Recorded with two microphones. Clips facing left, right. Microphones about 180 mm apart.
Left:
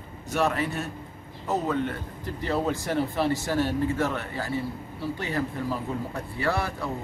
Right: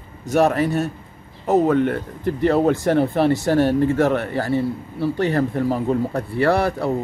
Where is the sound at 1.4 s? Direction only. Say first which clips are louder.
Right 10 dB; 60° right (ahead or behind).